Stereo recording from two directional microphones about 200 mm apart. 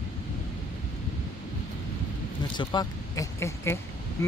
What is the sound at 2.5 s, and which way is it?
Speech, 20° left (ahead or behind).